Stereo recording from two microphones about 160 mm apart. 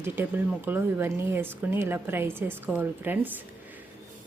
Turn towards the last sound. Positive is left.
turn(degrees=-10)  # may be behind; listen again after turning